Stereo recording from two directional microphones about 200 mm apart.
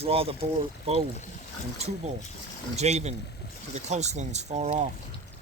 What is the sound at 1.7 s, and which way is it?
Speech, 30° right (ahead or behind).